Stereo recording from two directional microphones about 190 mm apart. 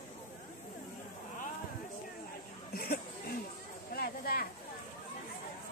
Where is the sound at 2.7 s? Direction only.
50° left (ahead or behind).